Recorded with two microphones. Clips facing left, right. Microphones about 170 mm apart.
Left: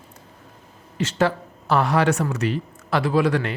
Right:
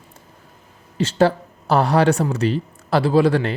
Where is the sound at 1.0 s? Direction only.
30° right (ahead or behind).